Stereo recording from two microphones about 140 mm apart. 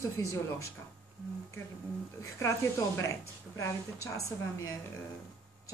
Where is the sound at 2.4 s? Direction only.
20° left (ahead or behind).